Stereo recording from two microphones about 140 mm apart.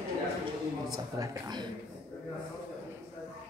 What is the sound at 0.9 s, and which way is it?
Speech, 25° right (ahead or behind).